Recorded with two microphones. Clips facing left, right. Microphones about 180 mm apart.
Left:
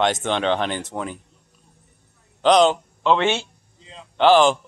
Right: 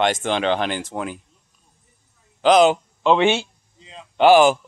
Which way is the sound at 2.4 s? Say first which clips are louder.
Right 1 dB; 5° right (ahead or behind).